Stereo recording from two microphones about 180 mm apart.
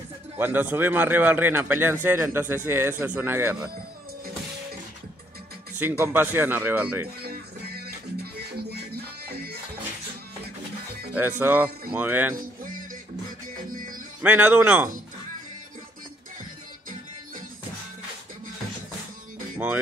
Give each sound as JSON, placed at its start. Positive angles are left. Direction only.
{"t": 0.4, "sound": "speech", "side_deg": -10}
{"t": 5.8, "sound": "speech", "side_deg": -10}
{"t": 7.2, "sound": "music", "side_deg": -60}
{"t": 11.1, "sound": "speech", "side_deg": -10}
{"t": 13.7, "sound": "music", "side_deg": -50}
{"t": 14.2, "sound": "speech", "side_deg": -10}